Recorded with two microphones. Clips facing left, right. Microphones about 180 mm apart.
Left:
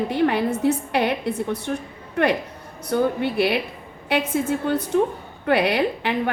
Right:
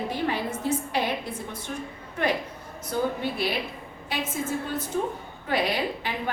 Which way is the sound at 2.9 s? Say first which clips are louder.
Left 6 dB; 65° left (ahead or behind).